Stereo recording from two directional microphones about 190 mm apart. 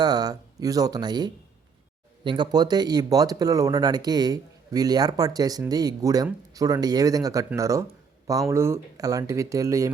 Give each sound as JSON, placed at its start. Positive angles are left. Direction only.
{"t": 0.0, "sound": "speech", "side_deg": -20}